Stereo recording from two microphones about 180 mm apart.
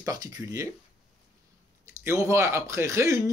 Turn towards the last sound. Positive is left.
turn(degrees=-15)  # may be behind; listen again after turning